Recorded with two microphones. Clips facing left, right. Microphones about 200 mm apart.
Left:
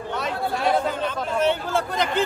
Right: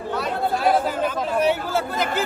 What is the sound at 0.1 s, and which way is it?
Speech, 5° right (ahead or behind).